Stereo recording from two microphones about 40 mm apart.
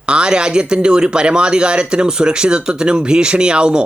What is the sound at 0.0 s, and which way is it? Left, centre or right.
Speech, right.